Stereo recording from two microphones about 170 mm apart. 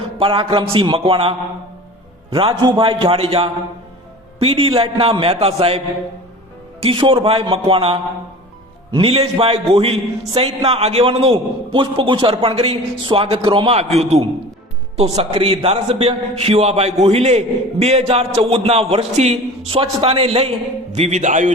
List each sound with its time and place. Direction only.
0.2 s a man's voice: 30° right (ahead or behind)
6.8 s a man's voice: 30° right (ahead or behind)